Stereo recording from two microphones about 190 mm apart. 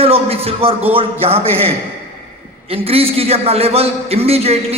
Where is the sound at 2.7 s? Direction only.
30° right (ahead or behind).